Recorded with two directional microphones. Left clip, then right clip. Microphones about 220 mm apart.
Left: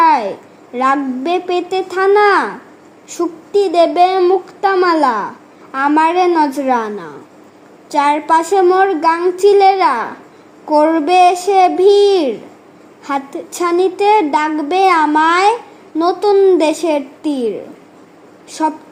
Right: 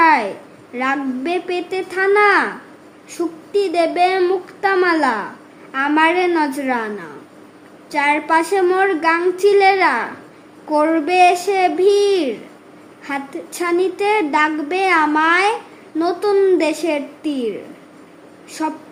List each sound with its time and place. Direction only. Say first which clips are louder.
0.0 s a sound: left 2 dB; 20° left (ahead or behind)
0.7 s a woman's voice: left 6 dB; 20° left (ahead or behind)
18.6 s speech: left 6 dB; 15° left (ahead or behind)